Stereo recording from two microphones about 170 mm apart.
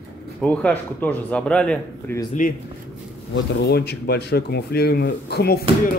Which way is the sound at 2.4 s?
50° left (ahead or behind).